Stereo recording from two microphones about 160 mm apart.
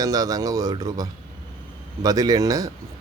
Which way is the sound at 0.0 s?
25° right (ahead or behind).